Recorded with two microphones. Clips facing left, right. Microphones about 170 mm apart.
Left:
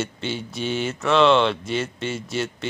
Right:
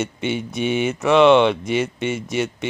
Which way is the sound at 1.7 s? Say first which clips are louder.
Right 5 dB; centre (ahead or behind).